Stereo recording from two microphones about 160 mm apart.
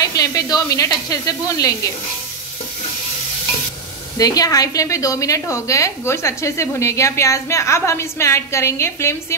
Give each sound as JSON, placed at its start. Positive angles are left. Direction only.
{"t": 0.0, "sound": "speech", "side_deg": 20}
{"t": 4.2, "sound": "a woman's voice", "side_deg": 20}